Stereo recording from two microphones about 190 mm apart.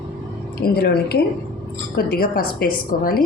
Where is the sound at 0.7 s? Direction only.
55° left (ahead or behind).